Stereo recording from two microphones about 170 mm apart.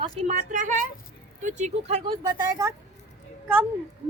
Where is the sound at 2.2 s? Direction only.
20° right (ahead or behind).